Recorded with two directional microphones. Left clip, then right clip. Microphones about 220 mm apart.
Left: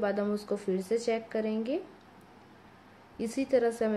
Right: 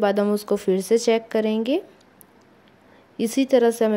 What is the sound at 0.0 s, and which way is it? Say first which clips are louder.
A woman's voice: right 10 dB; 40° right (ahead or behind).